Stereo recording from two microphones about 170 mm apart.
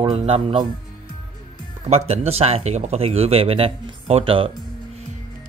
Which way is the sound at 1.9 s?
35° right (ahead or behind).